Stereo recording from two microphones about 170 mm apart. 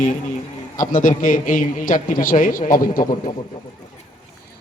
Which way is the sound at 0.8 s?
50° left (ahead or behind).